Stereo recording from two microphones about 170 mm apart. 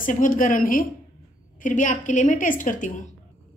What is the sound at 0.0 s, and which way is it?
Speech, 50° left (ahead or behind).